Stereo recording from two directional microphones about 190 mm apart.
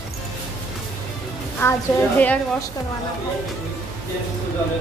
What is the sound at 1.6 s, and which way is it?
Speech, 10° left (ahead or behind).